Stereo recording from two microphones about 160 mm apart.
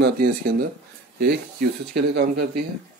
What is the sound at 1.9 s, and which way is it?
Speech, 90° right.